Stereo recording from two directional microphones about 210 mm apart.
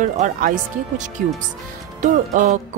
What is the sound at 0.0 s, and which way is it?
Music, 40° right (ahead or behind).